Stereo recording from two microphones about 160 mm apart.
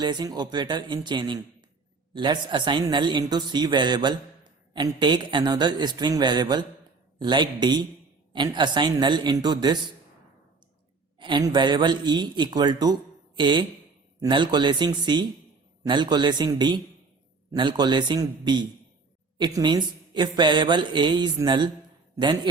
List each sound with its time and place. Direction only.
0.0 s a man's voice: 25° right (ahead or behind)
11.2 s a man's voice: 30° right (ahead or behind)